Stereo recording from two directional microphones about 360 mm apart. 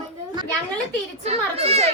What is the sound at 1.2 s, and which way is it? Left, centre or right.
Speech, centre.